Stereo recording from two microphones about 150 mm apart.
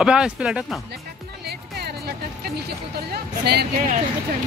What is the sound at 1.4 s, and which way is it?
Music, 90° right.